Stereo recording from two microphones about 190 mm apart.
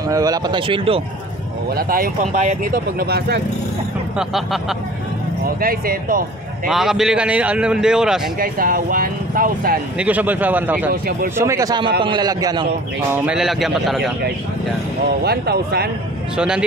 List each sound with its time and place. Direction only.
0.1 s speech: 20° right (ahead or behind)
1.8 s speech: 50° right (ahead or behind)
4.2 s a man's voice: centre (ahead or behind)
5.6 s speech: 50° right (ahead or behind)
6.7 s a man's voice: centre (ahead or behind)
8.4 s speech: 50° right (ahead or behind)
9.9 s a man's voice: 10° right (ahead or behind)
10.9 s speech: 50° right (ahead or behind)
11.3 s a man's voice: 15° right (ahead or behind)
13.1 s a man's voice: 5° right (ahead or behind)
15.2 s speech: 55° right (ahead or behind)
16.3 s a man's voice: 5° right (ahead or behind)